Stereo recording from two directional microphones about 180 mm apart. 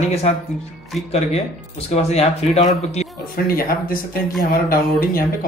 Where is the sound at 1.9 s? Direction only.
35° left (ahead or behind).